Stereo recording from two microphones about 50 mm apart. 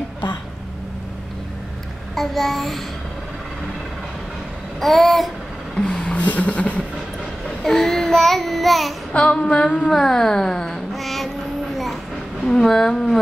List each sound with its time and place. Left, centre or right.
2.1 s child singing: centre
4.7 s child singing: centre
5.8 s a sound: centre
7.6 s child singing: centre
9.1 s female singing: left
9.8 s speech: centre
10.9 s child singing: centre
11.7 s train: centre
12.4 s speech: centre